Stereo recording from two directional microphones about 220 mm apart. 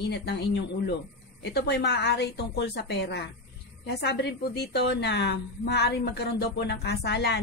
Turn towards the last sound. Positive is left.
turn(degrees=50)  # may be behind; listen again after turning